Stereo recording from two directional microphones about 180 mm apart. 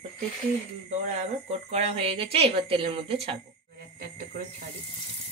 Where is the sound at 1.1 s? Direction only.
40° right (ahead or behind).